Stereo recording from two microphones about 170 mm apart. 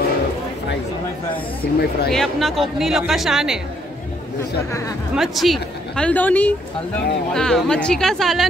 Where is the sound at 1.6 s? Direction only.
65° left (ahead or behind).